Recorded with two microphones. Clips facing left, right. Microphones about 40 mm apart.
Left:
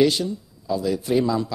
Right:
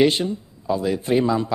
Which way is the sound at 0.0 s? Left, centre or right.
Right.